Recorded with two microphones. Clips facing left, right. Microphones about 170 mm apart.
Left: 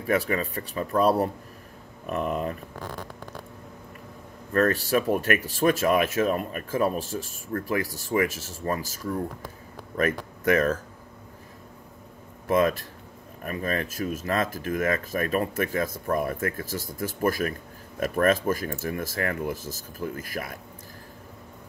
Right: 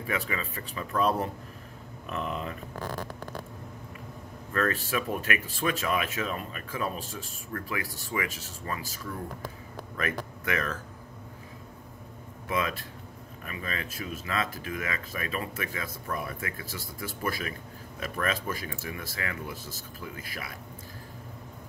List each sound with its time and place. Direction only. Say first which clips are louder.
0.0 s speech: left 8 dB; 45° left (ahead or behind)
2.0 s speech: left 6 dB; 50° left (ahead or behind)
4.5 s speech: left 6 dB; 40° left (ahead or behind)
12.4 s speech: left 8 dB; 45° left (ahead or behind)